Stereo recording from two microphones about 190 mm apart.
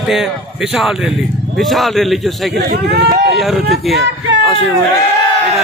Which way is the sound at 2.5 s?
55° right (ahead or behind).